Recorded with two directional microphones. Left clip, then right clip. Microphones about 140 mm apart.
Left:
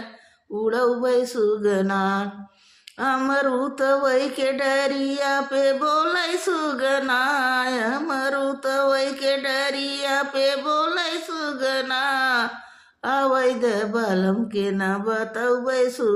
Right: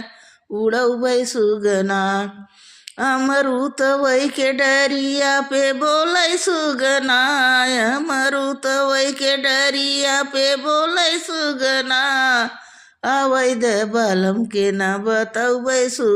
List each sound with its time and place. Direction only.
0.6 s speech: 25° right (ahead or behind)
3.0 s a sound: 30° right (ahead or behind)
13.0 s speech: 30° right (ahead or behind)